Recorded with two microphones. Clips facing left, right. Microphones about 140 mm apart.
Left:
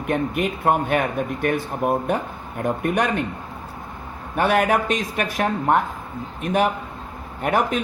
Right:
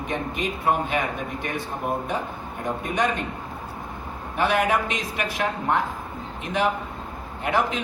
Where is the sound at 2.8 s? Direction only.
60° left (ahead or behind).